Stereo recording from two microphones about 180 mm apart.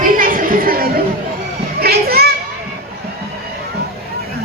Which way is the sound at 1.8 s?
60° right (ahead or behind).